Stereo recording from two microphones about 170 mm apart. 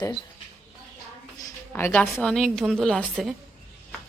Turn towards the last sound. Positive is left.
turn(degrees=0)  # may be behind; listen again after turning